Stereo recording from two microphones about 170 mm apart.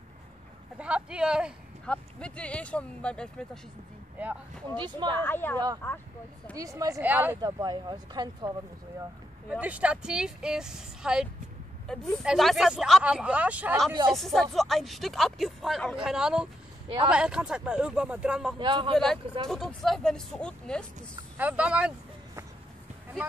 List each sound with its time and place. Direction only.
0.7 s speech: 5° right (ahead or behind)
1.9 s speech: 5° left (ahead or behind)
4.7 s speech: 25° right (ahead or behind)
5.1 s speech: 10° left (ahead or behind)
6.5 s speech: 20° right (ahead or behind)
7.4 s speech: 25° right (ahead or behind)
9.5 s speech: 10° right (ahead or behind)
18.6 s speech: 30° right (ahead or behind)
19.5 s speech: centre (ahead or behind)
21.4 s speech: 10° right (ahead or behind)